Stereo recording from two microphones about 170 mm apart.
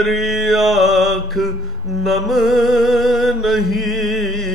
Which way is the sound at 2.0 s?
Centre (ahead or behind).